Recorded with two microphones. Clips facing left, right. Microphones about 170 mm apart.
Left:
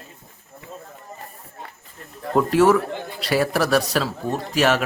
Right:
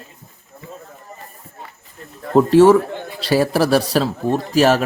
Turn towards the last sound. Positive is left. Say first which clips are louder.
# right 5 dB
turn(degrees=-35)  # may be behind; listen again after turning